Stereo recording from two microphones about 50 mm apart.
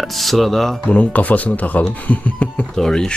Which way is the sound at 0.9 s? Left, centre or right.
Left.